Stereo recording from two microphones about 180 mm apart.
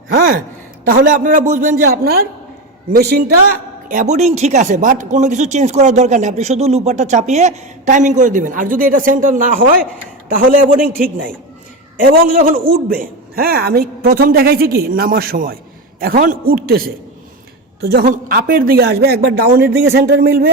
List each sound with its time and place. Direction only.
0.1 s a woman's voice: 50° right (ahead or behind)
11.9 s a man's voice: 55° right (ahead or behind)